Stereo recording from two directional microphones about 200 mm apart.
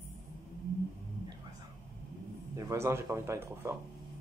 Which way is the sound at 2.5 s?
15° right (ahead or behind).